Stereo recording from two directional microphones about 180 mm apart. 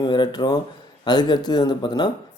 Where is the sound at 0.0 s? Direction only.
25° left (ahead or behind).